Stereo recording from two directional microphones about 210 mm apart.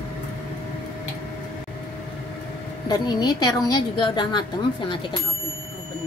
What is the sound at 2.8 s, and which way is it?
A woman's voice, 20° left (ahead or behind).